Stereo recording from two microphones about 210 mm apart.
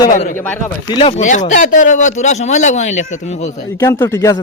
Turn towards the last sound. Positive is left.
turn(degrees=15)  # may be behind; listen again after turning